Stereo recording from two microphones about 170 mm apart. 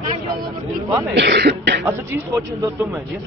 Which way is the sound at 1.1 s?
80° right.